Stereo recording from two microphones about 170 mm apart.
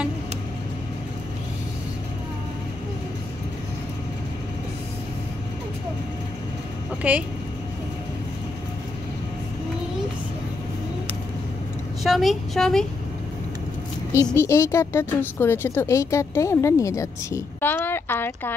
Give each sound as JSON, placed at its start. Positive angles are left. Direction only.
{"t": 7.0, "sound": "speech", "side_deg": -10}
{"t": 12.0, "sound": "a woman's voice", "side_deg": 0}
{"t": 14.3, "sound": "a woman's voice", "side_deg": 15}